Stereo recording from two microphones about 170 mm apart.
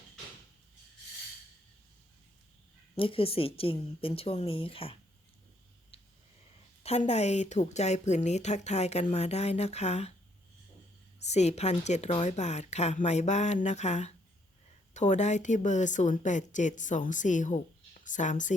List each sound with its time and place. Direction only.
2.9 s speech: 35° left (ahead or behind)
5.9 s a sound: 35° left (ahead or behind)
6.8 s speech: 40° left (ahead or behind)
11.2 s a woman's voice: 40° left (ahead or behind)